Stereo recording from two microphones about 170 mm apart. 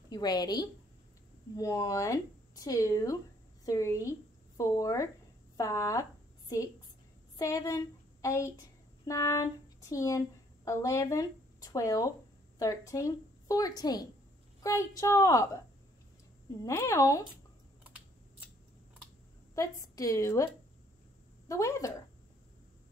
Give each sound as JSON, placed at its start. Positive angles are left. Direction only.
{"t": 0.1, "sound": "a woman's voice", "side_deg": 25}
{"t": 7.3, "sound": "a sound", "side_deg": 20}
{"t": 9.0, "sound": "a woman's voice", "side_deg": 20}
{"t": 16.6, "sound": "a woman's voice", "side_deg": 15}
{"t": 19.5, "sound": "speech", "side_deg": 20}
{"t": 21.5, "sound": "a woman's voice", "side_deg": 20}